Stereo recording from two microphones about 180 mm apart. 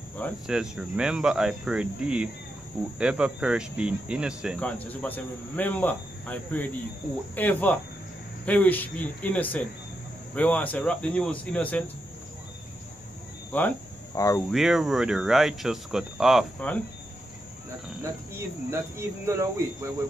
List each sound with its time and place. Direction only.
0.5 s speech: 5° right (ahead or behind)
4.6 s a man's voice: 10° left (ahead or behind)
13.5 s speech: 10° left (ahead or behind)
14.5 s speech: centre (ahead or behind)
18.3 s speech: 15° right (ahead or behind)